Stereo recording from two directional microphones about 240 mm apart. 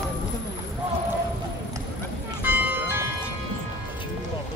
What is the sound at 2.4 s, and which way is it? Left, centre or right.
Music, centre.